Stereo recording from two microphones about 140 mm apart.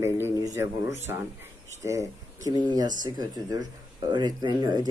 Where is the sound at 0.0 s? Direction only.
15° right (ahead or behind).